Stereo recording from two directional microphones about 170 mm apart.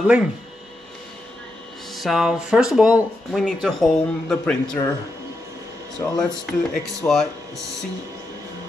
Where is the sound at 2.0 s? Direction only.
Centre (ahead or behind).